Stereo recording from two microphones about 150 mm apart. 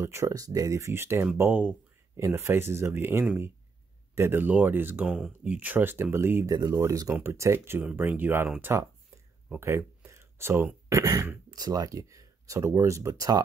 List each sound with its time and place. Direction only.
0.0 s speech: 20° right (ahead or behind)